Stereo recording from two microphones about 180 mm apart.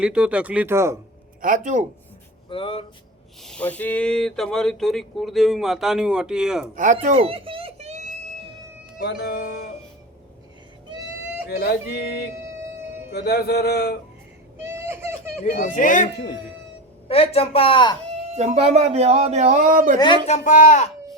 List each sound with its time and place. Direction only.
0.0 s speech: 5° right (ahead or behind)
1.4 s speech: 50° right (ahead or behind)
2.5 s a woman's voice: 30° left (ahead or behind)
3.4 s speech: 5° left (ahead or behind)
6.7 s speech: 45° right (ahead or behind)
7.1 s music: 30° right (ahead or behind)
9.0 s speech: 65° left (ahead or behind)
11.4 s speech: 60° left (ahead or behind)
13.1 s speech: 60° left (ahead or behind)
14.6 s baby cry: 15° right (ahead or behind)
15.6 s speech: 50° left (ahead or behind)
17.1 s a woman's voice: 35° left (ahead or behind)
18.2 s speech: 35° right (ahead or behind)
20.2 s speech: 40° left (ahead or behind)